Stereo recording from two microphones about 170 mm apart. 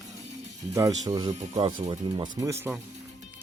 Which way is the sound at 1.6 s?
35° right (ahead or behind).